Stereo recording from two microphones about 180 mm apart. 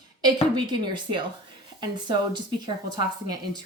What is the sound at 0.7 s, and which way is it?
Speech, 25° right (ahead or behind).